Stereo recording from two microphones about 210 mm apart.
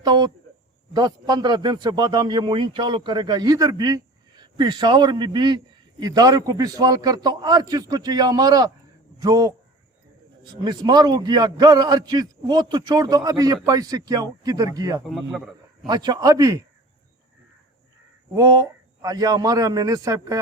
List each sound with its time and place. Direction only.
0.0 s a man's voice: 20° right (ahead or behind)
15.1 s a man's voice: centre (ahead or behind)
15.9 s a man's voice: 20° right (ahead or behind)
18.3 s a man's voice: 15° right (ahead or behind)